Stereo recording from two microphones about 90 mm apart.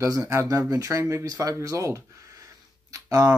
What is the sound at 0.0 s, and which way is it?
Speech, 35° right (ahead or behind).